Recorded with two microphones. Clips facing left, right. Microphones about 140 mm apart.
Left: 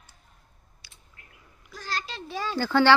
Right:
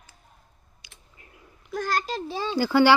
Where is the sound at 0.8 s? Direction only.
20° right (ahead or behind).